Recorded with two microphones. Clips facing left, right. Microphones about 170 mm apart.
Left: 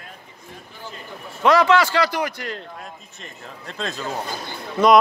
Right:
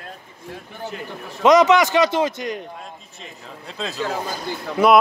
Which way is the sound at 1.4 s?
20° right (ahead or behind).